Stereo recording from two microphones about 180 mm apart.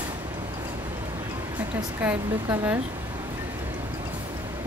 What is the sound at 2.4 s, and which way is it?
Speech, 15° right (ahead or behind).